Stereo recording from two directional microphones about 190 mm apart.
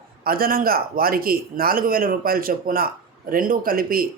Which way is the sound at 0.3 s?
50° right (ahead or behind).